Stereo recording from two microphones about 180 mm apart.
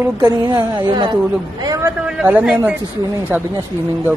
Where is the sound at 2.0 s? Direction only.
5° right (ahead or behind).